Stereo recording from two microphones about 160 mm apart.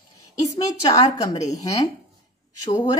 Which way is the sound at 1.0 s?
20° left (ahead or behind).